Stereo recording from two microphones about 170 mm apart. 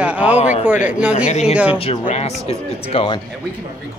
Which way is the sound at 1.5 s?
5° right (ahead or behind).